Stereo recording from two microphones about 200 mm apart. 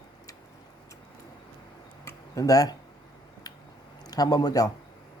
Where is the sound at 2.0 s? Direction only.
15° left (ahead or behind).